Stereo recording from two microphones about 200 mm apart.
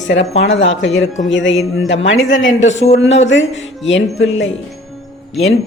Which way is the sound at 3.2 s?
70° left (ahead or behind).